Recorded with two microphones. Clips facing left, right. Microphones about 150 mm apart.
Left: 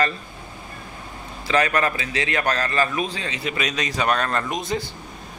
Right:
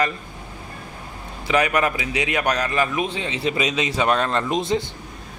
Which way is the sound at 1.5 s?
15° right (ahead or behind).